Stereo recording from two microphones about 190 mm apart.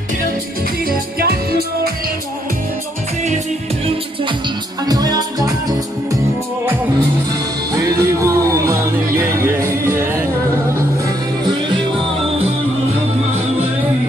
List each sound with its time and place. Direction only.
0.8 s music: 55° right (ahead or behind)
3.8 s music: 25° right (ahead or behind)
7.7 s music: 15° right (ahead or behind)